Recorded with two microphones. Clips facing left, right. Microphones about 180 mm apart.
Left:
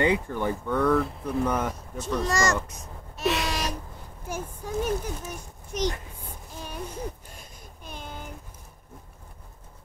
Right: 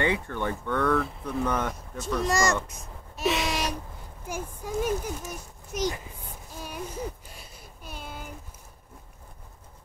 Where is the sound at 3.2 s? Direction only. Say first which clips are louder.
Even; centre (ahead or behind).